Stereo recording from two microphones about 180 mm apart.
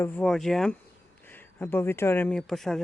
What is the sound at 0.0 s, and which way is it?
Speech, 5° left (ahead or behind).